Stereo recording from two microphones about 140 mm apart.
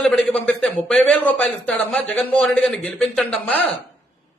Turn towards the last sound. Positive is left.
turn(degrees=10)  # may be behind; listen again after turning